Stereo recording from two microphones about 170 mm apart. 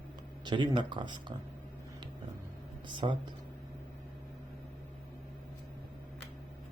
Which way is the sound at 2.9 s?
30° right (ahead or behind).